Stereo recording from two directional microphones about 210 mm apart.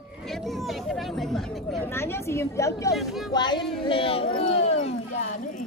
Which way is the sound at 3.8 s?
25° left (ahead or behind).